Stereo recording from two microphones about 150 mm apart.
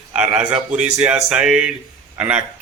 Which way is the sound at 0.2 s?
5° right (ahead or behind).